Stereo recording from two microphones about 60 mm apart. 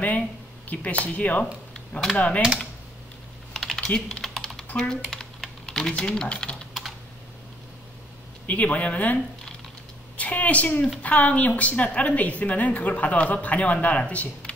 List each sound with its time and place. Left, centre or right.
0.7 s a woman's voice: left
3.5 s typing: centre
4.7 s speech: centre
5.4 s typing: centre
8.5 s a woman's voice: left